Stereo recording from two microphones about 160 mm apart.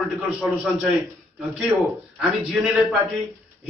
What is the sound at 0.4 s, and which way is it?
Speech, 5° right (ahead or behind).